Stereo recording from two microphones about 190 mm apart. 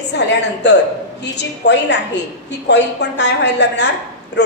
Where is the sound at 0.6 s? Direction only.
65° left (ahead or behind).